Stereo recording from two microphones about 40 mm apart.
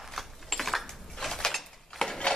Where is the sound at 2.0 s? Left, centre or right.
Centre.